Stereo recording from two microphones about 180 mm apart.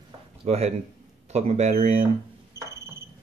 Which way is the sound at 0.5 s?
35° right (ahead or behind).